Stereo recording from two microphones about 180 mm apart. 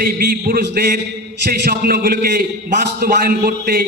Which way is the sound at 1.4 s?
55° right (ahead or behind).